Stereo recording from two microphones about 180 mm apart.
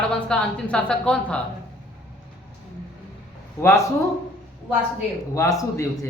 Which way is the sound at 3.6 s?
15° left (ahead or behind).